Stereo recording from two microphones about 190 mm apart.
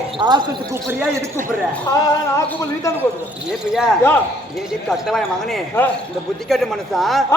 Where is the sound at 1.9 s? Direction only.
20° left (ahead or behind).